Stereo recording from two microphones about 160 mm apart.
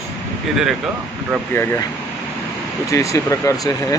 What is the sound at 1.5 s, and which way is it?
Speech, 15° left (ahead or behind).